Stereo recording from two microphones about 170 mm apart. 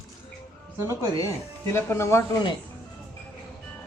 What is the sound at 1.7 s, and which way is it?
Speech, 15° left (ahead or behind).